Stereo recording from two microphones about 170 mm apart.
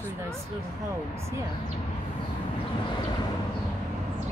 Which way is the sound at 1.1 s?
15° right (ahead or behind).